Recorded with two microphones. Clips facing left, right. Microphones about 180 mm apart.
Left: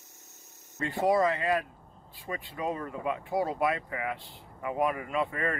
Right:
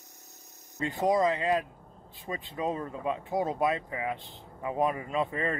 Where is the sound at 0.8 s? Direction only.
15° right (ahead or behind).